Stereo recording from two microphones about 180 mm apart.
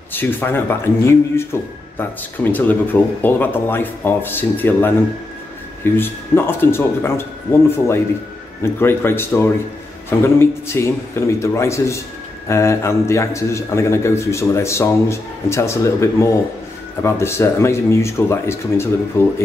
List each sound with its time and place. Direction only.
0.1 s a man's voice: 10° left (ahead or behind)